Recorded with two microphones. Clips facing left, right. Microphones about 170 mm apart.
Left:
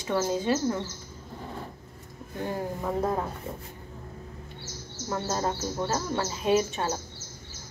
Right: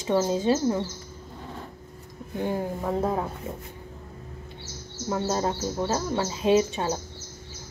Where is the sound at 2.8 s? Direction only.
10° right (ahead or behind).